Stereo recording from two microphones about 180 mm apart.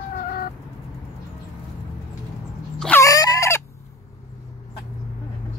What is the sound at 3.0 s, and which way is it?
Chicken, 20° left (ahead or behind).